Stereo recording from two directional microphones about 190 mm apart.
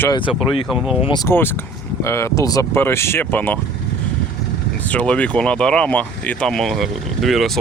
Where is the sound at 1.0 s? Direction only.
20° left (ahead or behind).